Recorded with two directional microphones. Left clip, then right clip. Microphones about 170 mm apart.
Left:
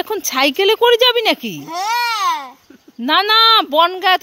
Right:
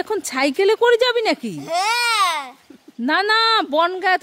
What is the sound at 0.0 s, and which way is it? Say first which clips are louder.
Speech: left 4 dB; centre (ahead or behind).